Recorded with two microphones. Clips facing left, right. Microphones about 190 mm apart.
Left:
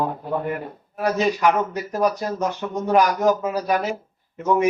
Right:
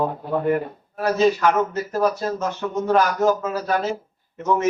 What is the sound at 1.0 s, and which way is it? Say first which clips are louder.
Speech: right 2 dB; 15° left (ahead or behind).